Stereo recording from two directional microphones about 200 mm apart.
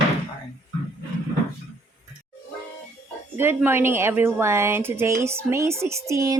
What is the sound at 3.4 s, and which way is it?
A woman's voice, 10° right (ahead or behind).